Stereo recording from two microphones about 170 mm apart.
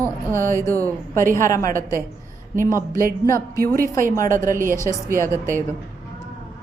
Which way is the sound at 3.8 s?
55° right (ahead or behind).